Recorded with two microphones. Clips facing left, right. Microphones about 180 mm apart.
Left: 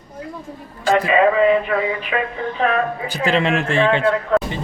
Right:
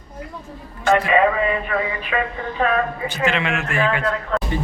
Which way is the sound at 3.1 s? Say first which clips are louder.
Left 3 dB; 35° left (ahead or behind).